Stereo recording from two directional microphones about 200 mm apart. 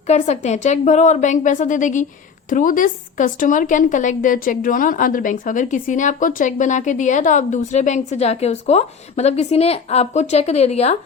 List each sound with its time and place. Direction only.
0.1 s a woman's voice: 35° left (ahead or behind)